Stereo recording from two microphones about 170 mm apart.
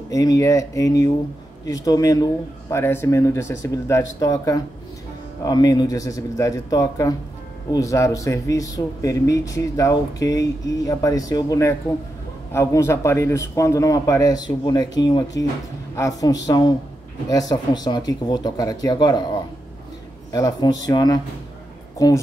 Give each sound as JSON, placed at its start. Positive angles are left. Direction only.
{"t": 0.1, "sound": "speech", "side_deg": 20}
{"t": 20.2, "sound": "a woman's voice", "side_deg": 20}